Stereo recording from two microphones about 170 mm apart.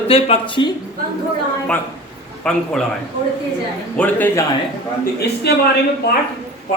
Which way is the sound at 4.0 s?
10° left (ahead or behind).